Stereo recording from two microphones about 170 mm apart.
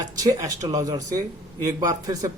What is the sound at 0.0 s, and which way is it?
A man's voice, 20° right (ahead or behind).